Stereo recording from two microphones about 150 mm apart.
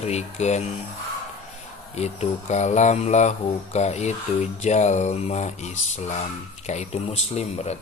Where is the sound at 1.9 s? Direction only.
50° left (ahead or behind).